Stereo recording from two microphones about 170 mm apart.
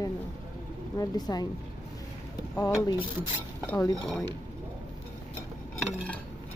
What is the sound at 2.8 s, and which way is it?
Speech, 30° left (ahead or behind).